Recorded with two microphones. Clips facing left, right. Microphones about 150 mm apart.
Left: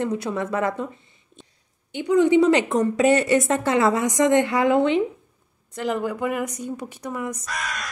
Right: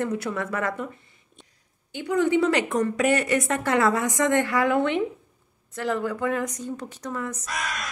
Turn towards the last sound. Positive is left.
turn(degrees=0)  # may be behind; listen again after turning